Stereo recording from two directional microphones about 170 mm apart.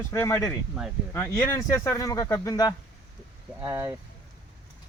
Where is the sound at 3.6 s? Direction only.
15° right (ahead or behind).